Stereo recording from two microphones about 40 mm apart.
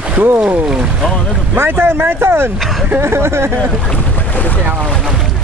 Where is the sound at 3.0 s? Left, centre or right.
Right.